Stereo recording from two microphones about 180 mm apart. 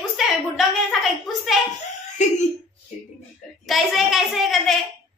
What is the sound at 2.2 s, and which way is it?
Speech, 40° left (ahead or behind).